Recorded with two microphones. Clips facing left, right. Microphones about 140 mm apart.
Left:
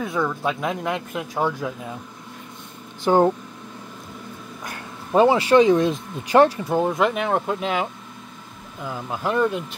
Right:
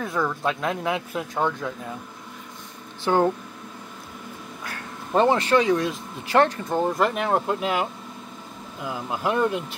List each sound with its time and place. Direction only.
0.0 s speech: centre (ahead or behind)
3.0 s speech: 15° left (ahead or behind)
4.6 s a sound: 10° left (ahead or behind)
5.6 s speech: 25° left (ahead or behind); by 9.6 s 5° right (ahead or behind)